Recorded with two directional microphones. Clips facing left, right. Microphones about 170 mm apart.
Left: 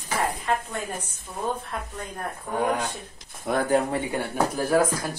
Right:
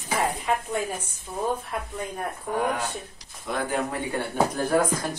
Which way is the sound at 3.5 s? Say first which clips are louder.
Left 4 dB; 45° left (ahead or behind).